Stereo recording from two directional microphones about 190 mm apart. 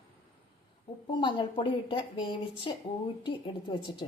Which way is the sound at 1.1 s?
25° left (ahead or behind).